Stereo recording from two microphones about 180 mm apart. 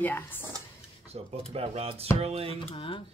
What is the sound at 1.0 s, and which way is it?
Speech, 35° right (ahead or behind).